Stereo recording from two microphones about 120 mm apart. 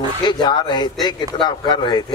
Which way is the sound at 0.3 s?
40° left (ahead or behind).